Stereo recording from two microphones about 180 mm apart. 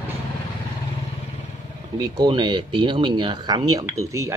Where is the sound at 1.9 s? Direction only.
25° right (ahead or behind).